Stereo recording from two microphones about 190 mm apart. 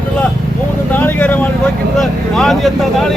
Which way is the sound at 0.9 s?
10° left (ahead or behind).